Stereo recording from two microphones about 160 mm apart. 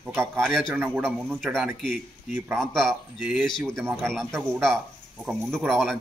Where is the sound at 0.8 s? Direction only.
10° right (ahead or behind).